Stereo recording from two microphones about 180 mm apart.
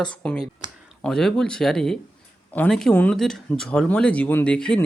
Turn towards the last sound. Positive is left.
turn(degrees=5)  # may be behind; listen again after turning